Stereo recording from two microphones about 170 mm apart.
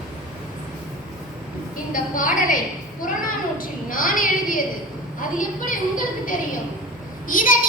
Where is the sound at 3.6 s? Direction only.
55° left (ahead or behind).